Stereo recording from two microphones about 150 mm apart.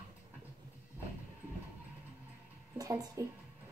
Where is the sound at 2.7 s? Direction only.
25° right (ahead or behind).